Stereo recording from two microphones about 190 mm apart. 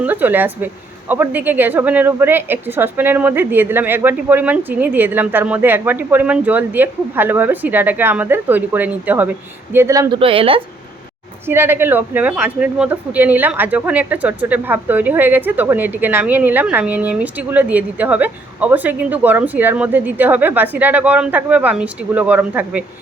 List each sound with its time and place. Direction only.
0.0 s speech: 10° right (ahead or behind)
10.2 s a woman's voice: 30° right (ahead or behind)
11.4 s speech: 10° right (ahead or behind)